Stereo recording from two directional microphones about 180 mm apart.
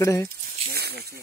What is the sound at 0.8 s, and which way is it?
Snake, 65° right (ahead or behind).